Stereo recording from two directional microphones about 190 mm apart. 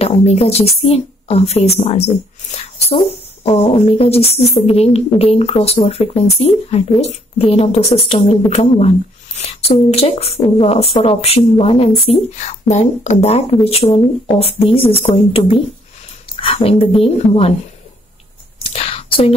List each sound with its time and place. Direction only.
0.0 s a woman's voice: 35° left (ahead or behind)
18.6 s whispering: 30° left (ahead or behind)